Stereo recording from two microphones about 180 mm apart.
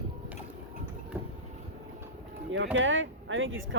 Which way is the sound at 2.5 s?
90° right.